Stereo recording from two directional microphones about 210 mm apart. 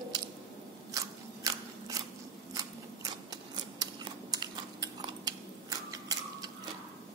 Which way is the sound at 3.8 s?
20° right (ahead or behind).